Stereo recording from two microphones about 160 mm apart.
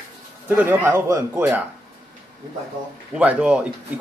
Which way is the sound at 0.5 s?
15° right (ahead or behind).